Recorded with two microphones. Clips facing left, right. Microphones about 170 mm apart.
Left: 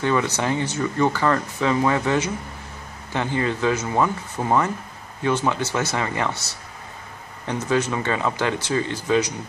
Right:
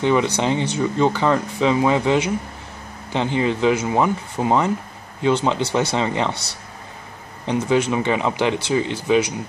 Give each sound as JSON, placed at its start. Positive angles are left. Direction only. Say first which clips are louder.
{"t": 0.0, "sound": "speech", "louder": "right 3 dB", "side_deg": -20}
{"t": 7.4, "sound": "speech", "louder": "right 4 dB", "side_deg": -15}